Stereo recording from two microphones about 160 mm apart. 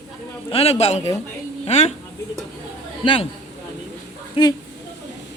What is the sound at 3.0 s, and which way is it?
Speech, 30° left (ahead or behind).